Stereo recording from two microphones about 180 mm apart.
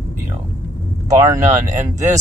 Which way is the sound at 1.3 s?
40° right (ahead or behind).